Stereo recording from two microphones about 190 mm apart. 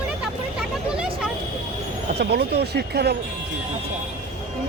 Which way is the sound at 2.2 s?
60° right (ahead or behind).